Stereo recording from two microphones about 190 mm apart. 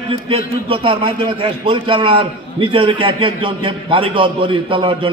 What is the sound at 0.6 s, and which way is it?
A man's voice, 30° right (ahead or behind).